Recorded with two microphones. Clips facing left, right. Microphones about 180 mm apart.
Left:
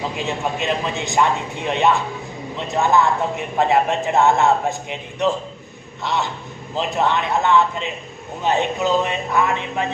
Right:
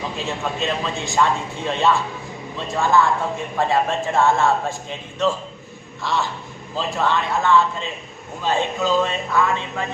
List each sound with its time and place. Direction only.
0.2 s a man's voice: 15° left (ahead or behind)